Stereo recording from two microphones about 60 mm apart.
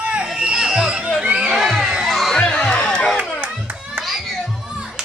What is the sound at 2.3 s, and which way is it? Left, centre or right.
Music, centre.